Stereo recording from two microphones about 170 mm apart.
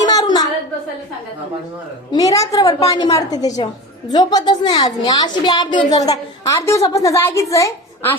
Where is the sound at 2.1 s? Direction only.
20° left (ahead or behind).